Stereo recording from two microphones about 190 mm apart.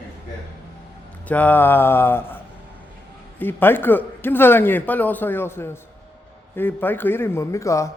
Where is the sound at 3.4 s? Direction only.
10° left (ahead or behind).